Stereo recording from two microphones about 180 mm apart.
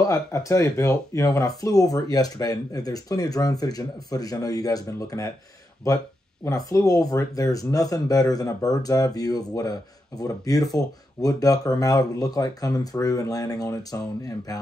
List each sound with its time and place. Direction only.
0.0 s speech: 20° left (ahead or behind)
6.4 s speech: 20° left (ahead or behind)